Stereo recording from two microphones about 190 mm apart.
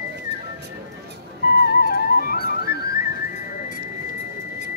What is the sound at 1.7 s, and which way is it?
Music, 50° left (ahead or behind).